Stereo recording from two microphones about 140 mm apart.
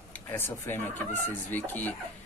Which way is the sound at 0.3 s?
15° left (ahead or behind).